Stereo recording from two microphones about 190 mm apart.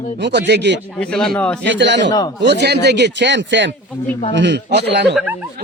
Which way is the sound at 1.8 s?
70° right (ahead or behind).